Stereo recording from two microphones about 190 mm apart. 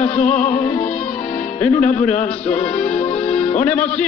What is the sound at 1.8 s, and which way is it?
Speech, 35° left (ahead or behind).